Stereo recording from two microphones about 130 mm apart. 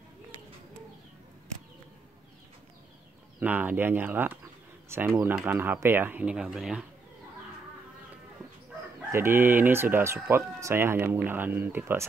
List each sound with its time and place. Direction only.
3.3 s speech: 15° right (ahead or behind)
9.1 s speech: 15° right (ahead or behind)